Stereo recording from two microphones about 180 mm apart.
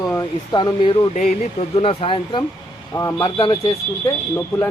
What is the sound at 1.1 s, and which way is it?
A man's voice, 40° left (ahead or behind).